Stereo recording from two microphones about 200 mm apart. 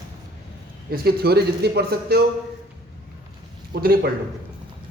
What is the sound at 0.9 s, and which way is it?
A man's voice, 50° right (ahead or behind).